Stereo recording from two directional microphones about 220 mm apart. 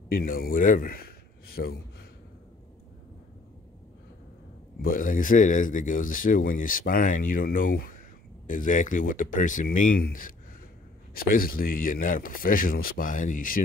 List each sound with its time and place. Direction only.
0.1 s a man's voice: 40° left (ahead or behind)
4.8 s speech: 40° left (ahead or behind)